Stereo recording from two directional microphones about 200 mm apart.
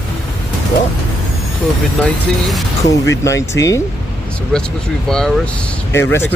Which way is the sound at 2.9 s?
15° left (ahead or behind).